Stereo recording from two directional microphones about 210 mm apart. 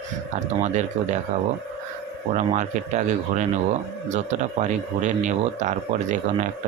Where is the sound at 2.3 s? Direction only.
35° right (ahead or behind).